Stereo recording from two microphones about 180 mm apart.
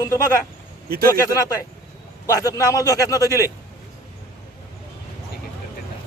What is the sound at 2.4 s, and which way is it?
Speech, 20° left (ahead or behind).